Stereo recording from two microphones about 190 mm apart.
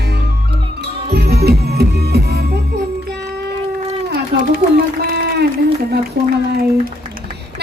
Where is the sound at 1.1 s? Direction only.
60° right (ahead or behind).